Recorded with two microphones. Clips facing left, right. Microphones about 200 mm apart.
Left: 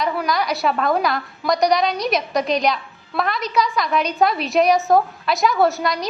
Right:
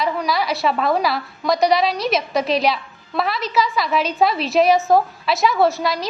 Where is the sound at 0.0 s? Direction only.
Centre (ahead or behind).